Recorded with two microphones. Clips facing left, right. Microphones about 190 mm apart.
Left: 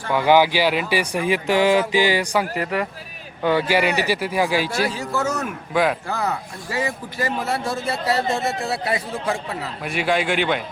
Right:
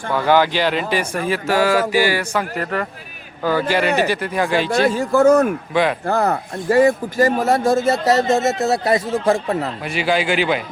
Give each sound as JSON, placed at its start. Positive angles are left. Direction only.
{"t": 0.1, "sound": "speech", "side_deg": 15}
{"t": 4.9, "sound": "speech", "side_deg": -50}
{"t": 5.7, "sound": "a man's voice", "side_deg": 0}
{"t": 6.1, "sound": "speech", "side_deg": -55}
{"t": 9.8, "sound": "a man's voice", "side_deg": 0}